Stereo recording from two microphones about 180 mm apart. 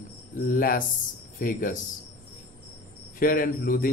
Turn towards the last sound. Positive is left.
turn(degrees=50)  # may be behind; listen again after turning